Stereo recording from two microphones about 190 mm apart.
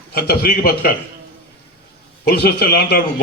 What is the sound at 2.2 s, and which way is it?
Speech, 55° left (ahead or behind).